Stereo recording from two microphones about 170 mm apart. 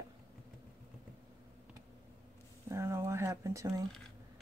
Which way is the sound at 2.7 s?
15° right (ahead or behind).